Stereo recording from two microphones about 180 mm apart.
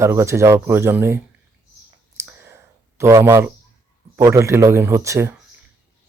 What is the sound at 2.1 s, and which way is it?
Clicking, 15° right (ahead or behind).